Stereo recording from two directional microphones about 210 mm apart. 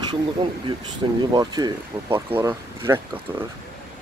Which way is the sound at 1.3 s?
20° right (ahead or behind).